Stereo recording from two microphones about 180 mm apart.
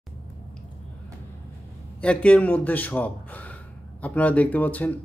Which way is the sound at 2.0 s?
5° left (ahead or behind).